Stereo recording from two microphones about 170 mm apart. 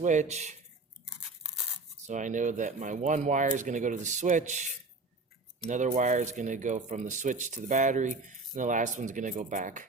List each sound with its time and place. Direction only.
0.0 s speech: 45° right (ahead or behind)
1.0 s scissors: 5° right (ahead or behind)
2.0 s speech: 45° right (ahead or behind)